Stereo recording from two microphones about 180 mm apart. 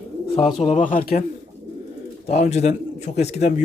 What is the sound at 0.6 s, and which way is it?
Speech, 40° left (ahead or behind).